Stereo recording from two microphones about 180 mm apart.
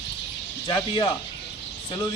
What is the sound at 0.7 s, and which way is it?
Speech, 20° left (ahead or behind).